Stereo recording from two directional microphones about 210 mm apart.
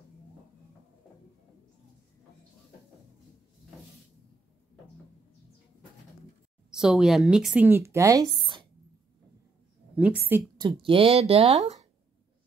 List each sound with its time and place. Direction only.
6.7 s speech: 5° right (ahead or behind); by 8.6 s 25° right (ahead or behind)
9.9 s speech: 5° right (ahead or behind)
10.6 s speech: 25° right (ahead or behind)